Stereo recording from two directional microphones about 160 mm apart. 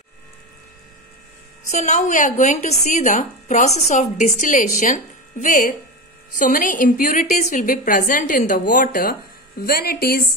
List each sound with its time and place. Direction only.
1.7 s a woman's voice: 45° left (ahead or behind)
9.6 s speech: 70° left (ahead or behind)